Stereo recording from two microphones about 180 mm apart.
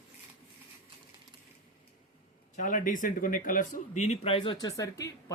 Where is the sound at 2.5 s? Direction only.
45° left (ahead or behind).